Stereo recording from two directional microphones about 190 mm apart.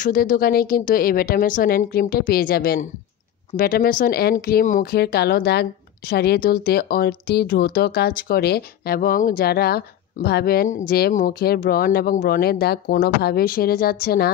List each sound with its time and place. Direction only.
0.0 s a woman's voice: 45° left (ahead or behind)